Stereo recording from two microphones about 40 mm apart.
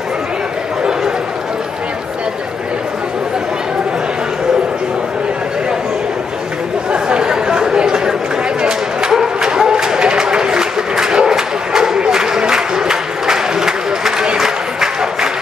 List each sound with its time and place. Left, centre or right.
6.9 s chatter: right
9.2 s a sound: centre
12.0 s applause: centre